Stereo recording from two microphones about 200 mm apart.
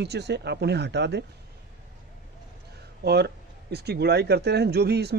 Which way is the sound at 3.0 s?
55° right (ahead or behind).